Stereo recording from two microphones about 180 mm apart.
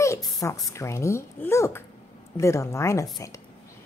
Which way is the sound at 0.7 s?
15° left (ahead or behind).